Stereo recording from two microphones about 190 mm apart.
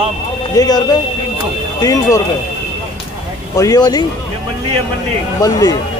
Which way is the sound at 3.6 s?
20° left (ahead or behind).